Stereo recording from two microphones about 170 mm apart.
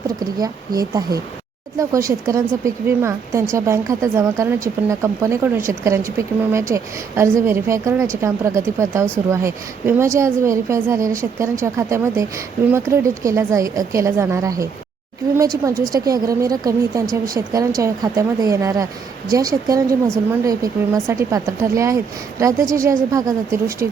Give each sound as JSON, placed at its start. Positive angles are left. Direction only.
{"t": 0.2, "sound": "speech", "side_deg": -25}